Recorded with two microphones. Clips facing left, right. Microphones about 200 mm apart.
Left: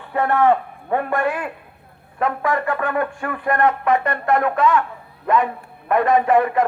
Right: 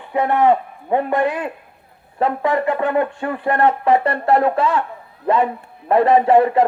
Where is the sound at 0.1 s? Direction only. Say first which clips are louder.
Right 1 dB; 15° right (ahead or behind).